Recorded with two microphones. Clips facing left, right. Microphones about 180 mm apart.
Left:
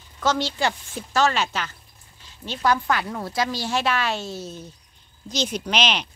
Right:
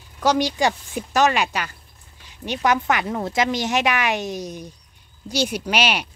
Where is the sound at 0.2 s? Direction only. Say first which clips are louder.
Right 4 dB; 15° right (ahead or behind).